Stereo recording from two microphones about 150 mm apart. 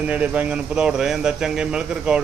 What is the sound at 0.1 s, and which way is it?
A man's voice, 10° right (ahead or behind).